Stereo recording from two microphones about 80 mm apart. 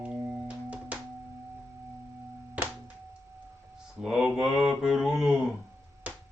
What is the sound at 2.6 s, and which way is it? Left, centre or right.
Music, centre.